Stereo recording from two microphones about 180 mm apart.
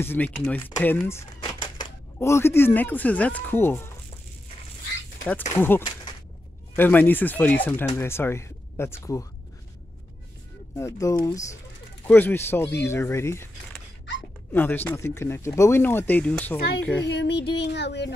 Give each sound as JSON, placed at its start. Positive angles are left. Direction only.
{"t": 0.0, "sound": "speech", "side_deg": 10}
{"t": 1.4, "sound": "typewriter", "side_deg": 25}
{"t": 2.1, "sound": "speech", "side_deg": 15}
{"t": 5.5, "sound": "speech", "side_deg": 10}
{"t": 10.8, "sound": "speech", "side_deg": 15}
{"t": 14.5, "sound": "speech", "side_deg": 10}
{"t": 17.0, "sound": "child singing", "side_deg": 70}